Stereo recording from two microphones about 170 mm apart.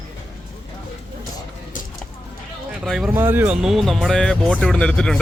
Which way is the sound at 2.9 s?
5° right (ahead or behind).